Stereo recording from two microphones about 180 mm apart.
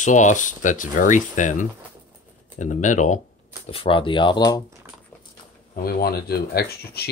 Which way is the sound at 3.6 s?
30° left (ahead or behind).